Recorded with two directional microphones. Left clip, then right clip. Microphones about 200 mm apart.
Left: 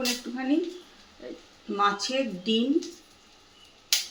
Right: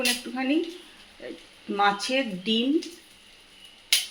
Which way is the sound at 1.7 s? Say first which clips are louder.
Right 2 dB; 25° right (ahead or behind).